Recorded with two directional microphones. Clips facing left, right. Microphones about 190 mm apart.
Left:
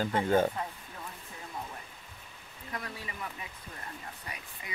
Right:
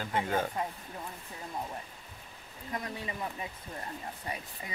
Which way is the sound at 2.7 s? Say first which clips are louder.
Right 3 dB; 25° right (ahead or behind).